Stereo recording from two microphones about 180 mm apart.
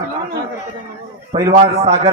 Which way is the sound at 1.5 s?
40° right (ahead or behind).